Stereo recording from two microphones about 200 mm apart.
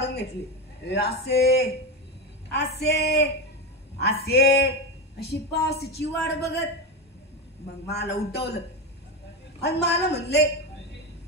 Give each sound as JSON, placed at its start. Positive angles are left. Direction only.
{"t": 0.0, "sound": "a sound", "side_deg": 55}
{"t": 0.8, "sound": "a woman's voice", "side_deg": 55}
{"t": 7.8, "sound": "a woman's voice", "side_deg": 55}
{"t": 9.6, "sound": "a woman's voice", "side_deg": 55}